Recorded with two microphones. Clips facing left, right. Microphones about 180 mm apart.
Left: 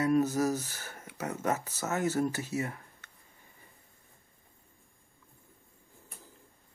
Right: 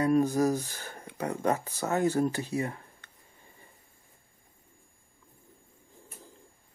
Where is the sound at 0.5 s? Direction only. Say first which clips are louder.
Right 3 dB; 15° right (ahead or behind).